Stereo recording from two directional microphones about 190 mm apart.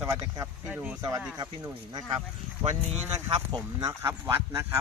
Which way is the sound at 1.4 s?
20° right (ahead or behind).